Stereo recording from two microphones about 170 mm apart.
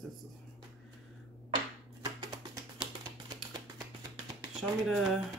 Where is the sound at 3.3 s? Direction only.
20° right (ahead or behind).